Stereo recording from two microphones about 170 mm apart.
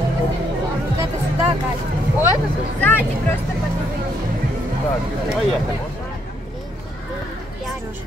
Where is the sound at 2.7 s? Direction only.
10° left (ahead or behind).